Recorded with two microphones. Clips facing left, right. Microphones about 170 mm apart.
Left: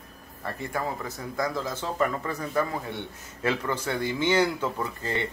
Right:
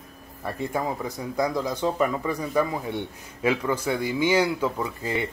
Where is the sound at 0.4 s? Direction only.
15° right (ahead or behind).